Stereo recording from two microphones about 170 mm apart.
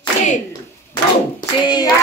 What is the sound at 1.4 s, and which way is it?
Hands, 25° left (ahead or behind).